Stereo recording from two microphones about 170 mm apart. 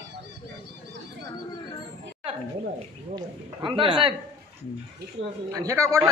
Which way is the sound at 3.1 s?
30° right (ahead or behind).